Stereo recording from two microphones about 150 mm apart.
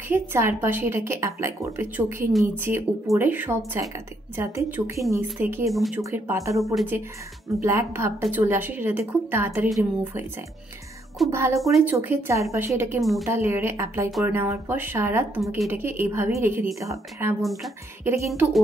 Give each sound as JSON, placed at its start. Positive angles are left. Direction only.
{"t": 0.1, "sound": "a woman's voice", "side_deg": -15}
{"t": 5.7, "sound": "speech", "side_deg": 0}
{"t": 5.9, "sound": "speech", "side_deg": -15}
{"t": 6.6, "sound": "speech", "side_deg": 0}
{"t": 7.4, "sound": "a woman's voice", "side_deg": -20}
{"t": 11.2, "sound": "a woman's voice", "side_deg": -20}
{"t": 17.4, "sound": "speech", "side_deg": 0}
{"t": 18.0, "sound": "speech", "side_deg": -20}